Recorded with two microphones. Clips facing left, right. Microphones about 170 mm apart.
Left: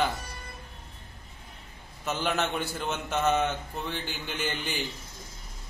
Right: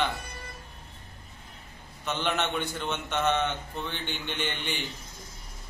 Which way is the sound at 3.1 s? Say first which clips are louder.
Left 1 dB; 35° left (ahead or behind).